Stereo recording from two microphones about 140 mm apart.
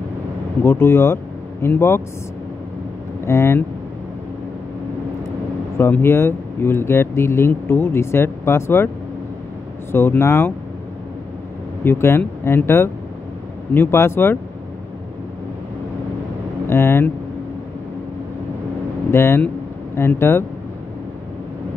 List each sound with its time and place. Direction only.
0.7 s speech: 15° left (ahead or behind)
3.3 s speech: 20° left (ahead or behind)
5.8 s speech: 15° left (ahead or behind)
9.9 s speech: 15° left (ahead or behind)
11.8 s speech: 15° left (ahead or behind)
16.6 s speech: 15° left (ahead or behind)
19.0 s speech: 20° left (ahead or behind)